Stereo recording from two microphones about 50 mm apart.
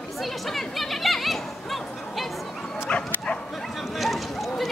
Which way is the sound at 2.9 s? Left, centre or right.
Left.